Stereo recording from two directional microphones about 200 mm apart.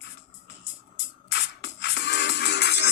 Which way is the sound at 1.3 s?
60° left (ahead or behind).